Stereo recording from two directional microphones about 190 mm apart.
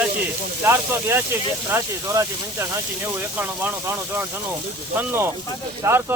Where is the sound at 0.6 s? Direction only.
15° right (ahead or behind).